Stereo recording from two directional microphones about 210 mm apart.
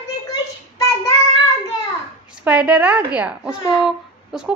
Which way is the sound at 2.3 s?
5° right (ahead or behind).